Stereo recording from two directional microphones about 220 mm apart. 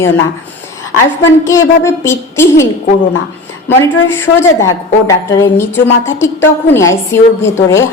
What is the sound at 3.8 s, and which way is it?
A woman's voice, 10° left (ahead or behind).